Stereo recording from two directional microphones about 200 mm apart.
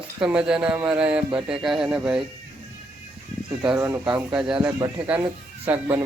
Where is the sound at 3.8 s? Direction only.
15° right (ahead or behind).